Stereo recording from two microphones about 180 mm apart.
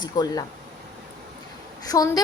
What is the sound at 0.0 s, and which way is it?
Speech, 25° left (ahead or behind).